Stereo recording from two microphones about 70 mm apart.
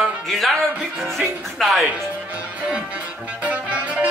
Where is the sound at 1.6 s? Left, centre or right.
Centre.